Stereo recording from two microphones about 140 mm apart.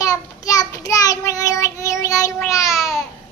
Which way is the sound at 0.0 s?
25° left (ahead or behind).